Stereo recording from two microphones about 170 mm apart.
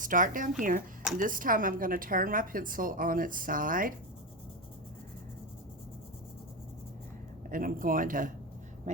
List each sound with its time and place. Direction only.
0.0 s a woman's voice: 50° right (ahead or behind)
7.5 s speech: 55° right (ahead or behind)